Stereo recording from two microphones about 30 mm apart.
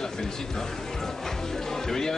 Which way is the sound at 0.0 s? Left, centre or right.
Centre.